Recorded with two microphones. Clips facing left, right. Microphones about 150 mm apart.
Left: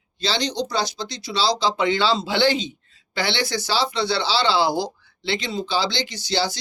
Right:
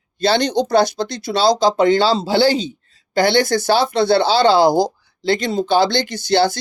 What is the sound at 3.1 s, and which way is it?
Speech, 45° right (ahead or behind).